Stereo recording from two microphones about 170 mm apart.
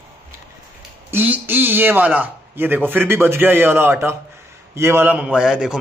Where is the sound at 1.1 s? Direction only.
10° right (ahead or behind).